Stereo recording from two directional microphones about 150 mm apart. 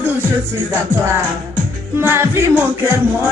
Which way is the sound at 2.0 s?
15° right (ahead or behind).